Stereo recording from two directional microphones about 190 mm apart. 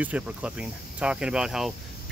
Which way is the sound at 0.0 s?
5° right (ahead or behind).